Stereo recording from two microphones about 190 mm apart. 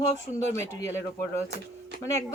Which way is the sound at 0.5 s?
15° left (ahead or behind).